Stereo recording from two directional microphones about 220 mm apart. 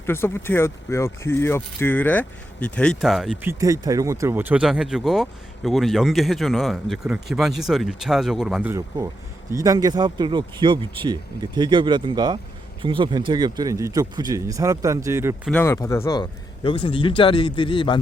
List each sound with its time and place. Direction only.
0.0 s speech: 10° left (ahead or behind)
3.6 s speech: 15° right (ahead or behind)
15.4 s speech: 10° left (ahead or behind)